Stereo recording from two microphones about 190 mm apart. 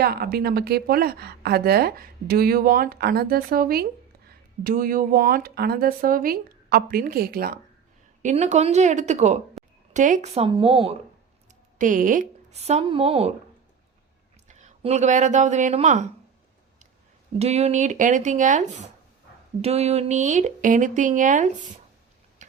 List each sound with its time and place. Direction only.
0.0 s a woman's voice: 55° right (ahead or behind)
8.2 s speech: 40° right (ahead or behind)
11.8 s speech: 45° right (ahead or behind)
14.4 s speech: 40° right (ahead or behind)
17.3 s speech: 35° right (ahead or behind)
22.4 s a sound: 40° right (ahead or behind)